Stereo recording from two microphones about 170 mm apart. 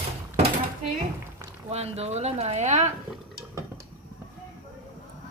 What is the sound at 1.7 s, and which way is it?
Speech, 40° right (ahead or behind).